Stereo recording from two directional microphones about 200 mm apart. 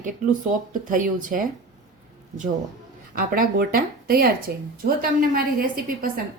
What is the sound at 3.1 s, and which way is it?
A woman's voice, 45° right (ahead or behind).